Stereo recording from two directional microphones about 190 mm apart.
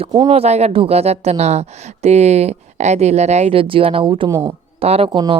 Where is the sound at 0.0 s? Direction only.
25° right (ahead or behind).